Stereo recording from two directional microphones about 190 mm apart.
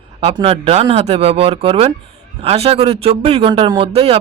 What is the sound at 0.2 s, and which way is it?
A man's voice, 30° right (ahead or behind).